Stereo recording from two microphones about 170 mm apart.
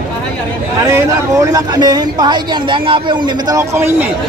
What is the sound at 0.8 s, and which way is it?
Speech, 20° right (ahead or behind).